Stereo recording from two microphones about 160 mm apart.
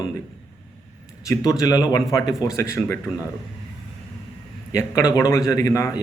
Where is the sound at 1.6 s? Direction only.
25° left (ahead or behind).